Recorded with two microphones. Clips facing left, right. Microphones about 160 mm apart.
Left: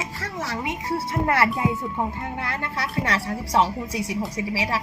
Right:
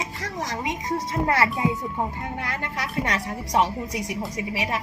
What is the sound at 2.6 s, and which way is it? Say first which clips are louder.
Speech: left 1 dB; 20° right (ahead or behind).